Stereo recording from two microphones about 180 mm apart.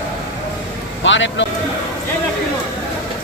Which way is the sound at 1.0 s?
90° left.